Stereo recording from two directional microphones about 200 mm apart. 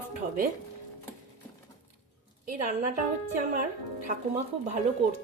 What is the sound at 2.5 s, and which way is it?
Speech, 45° right (ahead or behind).